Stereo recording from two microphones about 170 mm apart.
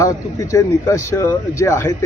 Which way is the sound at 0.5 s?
20° left (ahead or behind).